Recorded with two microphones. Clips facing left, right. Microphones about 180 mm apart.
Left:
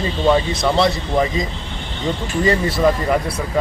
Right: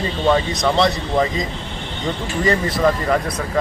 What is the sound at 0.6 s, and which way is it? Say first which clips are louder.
Speech: even; 5° left (ahead or behind).